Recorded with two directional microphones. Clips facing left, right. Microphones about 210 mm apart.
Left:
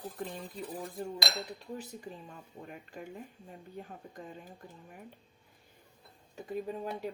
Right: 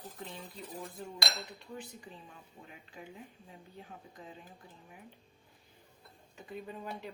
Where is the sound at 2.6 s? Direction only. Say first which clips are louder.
Left 5 dB; 50° left (ahead or behind).